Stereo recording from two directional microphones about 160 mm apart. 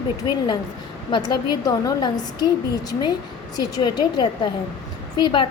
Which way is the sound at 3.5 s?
25° left (ahead or behind).